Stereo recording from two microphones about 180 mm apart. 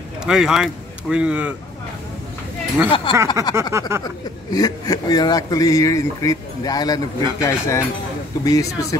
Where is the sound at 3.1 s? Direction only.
30° left (ahead or behind).